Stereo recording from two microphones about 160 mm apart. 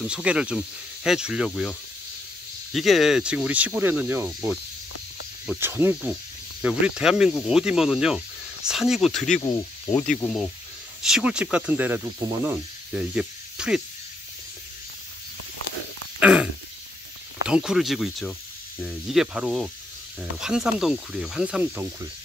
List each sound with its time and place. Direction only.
0.0 s speech: 5° right (ahead or behind)
2.7 s speech: centre (ahead or behind)
5.6 s speech: 15° right (ahead or behind)
9.4 s speech: 20° left (ahead or behind)
10.0 s speech: 5° left (ahead or behind)
16.2 s a sound: 10° right (ahead or behind)
17.5 s speech: 5° right (ahead or behind)